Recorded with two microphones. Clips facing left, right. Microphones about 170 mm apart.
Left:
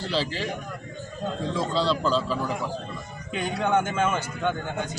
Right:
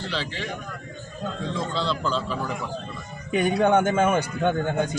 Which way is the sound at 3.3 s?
60° right (ahead or behind).